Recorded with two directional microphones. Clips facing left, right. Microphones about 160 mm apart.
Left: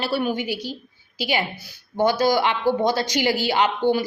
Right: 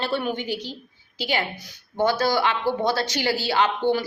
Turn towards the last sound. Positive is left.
turn(degrees=15)  # may be behind; listen again after turning